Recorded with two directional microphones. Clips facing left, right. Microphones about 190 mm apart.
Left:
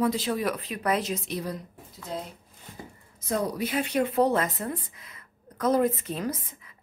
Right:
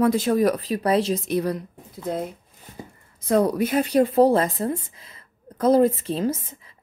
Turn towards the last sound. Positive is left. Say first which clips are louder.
# right 6 dB
turn(degrees=-30)  # may be behind; listen again after turning